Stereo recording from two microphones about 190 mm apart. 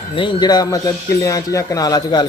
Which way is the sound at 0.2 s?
25° left (ahead or behind).